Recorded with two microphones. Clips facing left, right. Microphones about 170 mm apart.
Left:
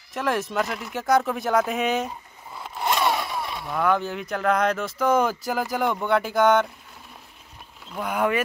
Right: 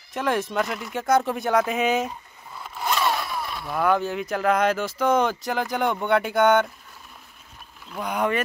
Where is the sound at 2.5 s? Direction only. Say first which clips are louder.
Left 2 dB; 20° left (ahead or behind).